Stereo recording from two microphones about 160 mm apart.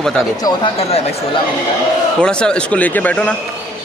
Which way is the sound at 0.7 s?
40° left (ahead or behind).